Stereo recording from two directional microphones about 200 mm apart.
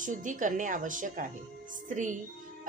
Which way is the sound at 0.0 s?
40° right (ahead or behind).